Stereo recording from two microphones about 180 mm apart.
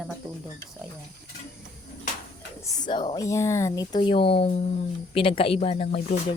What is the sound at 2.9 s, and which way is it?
Speech, 25° left (ahead or behind).